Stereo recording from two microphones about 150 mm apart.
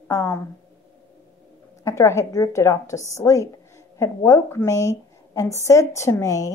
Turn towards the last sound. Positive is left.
turn(degrees=20)  # may be behind; listen again after turning